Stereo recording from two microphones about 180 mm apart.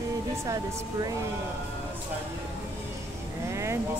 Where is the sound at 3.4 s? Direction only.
15° right (ahead or behind).